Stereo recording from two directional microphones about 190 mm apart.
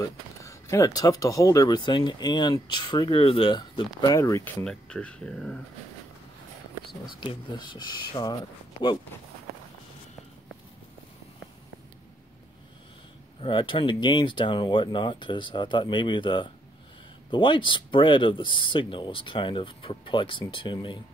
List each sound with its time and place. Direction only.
0.0 s speech: 15° left (ahead or behind)
4.6 s speech: 5° left (ahead or behind)
7.2 s speech: 25° left (ahead or behind)
13.4 s speech: 25° left (ahead or behind)